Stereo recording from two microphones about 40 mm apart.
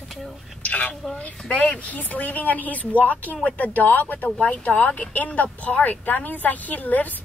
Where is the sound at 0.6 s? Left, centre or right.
Left.